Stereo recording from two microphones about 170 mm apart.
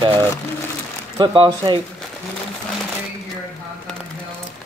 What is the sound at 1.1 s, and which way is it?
Speech, 25° right (ahead or behind).